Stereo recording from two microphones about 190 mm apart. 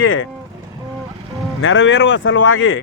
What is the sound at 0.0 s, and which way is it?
Speech, 90° left.